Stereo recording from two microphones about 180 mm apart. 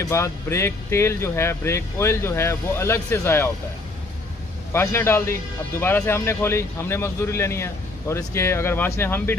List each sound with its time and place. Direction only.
0.0 s a man's voice: 15° left (ahead or behind)
4.7 s a man's voice: 15° left (ahead or behind)